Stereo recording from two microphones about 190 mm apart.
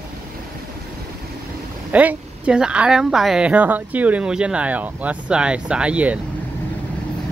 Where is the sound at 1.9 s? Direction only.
10° right (ahead or behind).